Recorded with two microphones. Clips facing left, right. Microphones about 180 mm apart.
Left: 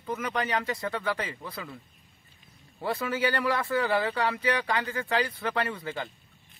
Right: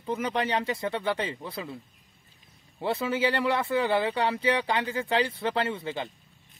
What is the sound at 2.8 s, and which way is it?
Speech, 25° right (ahead or behind).